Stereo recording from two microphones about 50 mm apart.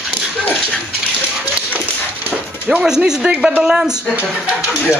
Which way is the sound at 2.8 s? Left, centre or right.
Centre.